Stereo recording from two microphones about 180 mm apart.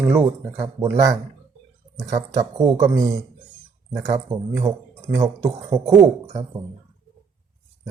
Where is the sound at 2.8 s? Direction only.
20° right (ahead or behind).